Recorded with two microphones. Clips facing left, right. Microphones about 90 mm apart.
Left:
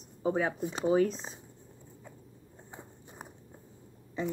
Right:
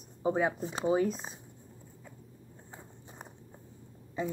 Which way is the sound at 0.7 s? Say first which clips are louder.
Left 2 dB; 20° right (ahead or behind).